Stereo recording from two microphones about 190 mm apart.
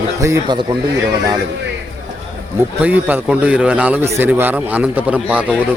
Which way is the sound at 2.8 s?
10° right (ahead or behind).